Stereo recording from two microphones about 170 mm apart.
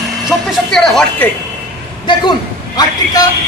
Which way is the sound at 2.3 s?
20° left (ahead or behind).